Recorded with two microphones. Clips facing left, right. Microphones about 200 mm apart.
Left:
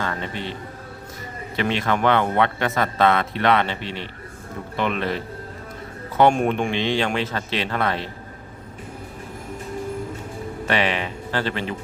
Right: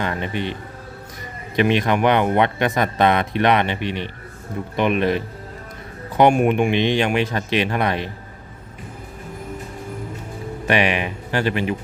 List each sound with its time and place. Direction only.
0.0 s music: 15° right (ahead or behind)
1.5 s speech: 15° right (ahead or behind)
10.7 s speech: 15° right (ahead or behind)